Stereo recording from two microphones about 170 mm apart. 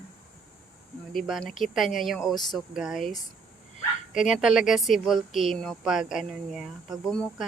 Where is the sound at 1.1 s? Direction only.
Centre (ahead or behind).